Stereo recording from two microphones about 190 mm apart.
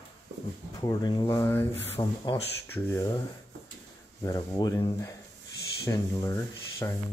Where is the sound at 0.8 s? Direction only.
20° left (ahead or behind).